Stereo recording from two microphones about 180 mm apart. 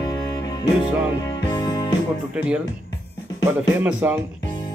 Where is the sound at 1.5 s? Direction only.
20° left (ahead or behind).